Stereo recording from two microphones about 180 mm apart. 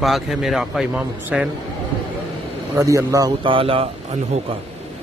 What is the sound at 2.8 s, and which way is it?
Speech, 20° right (ahead or behind).